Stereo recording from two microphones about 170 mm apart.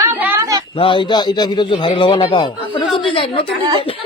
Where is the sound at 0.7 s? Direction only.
30° left (ahead or behind).